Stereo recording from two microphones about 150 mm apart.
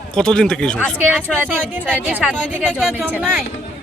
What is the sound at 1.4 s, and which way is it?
Speech, 10° right (ahead or behind).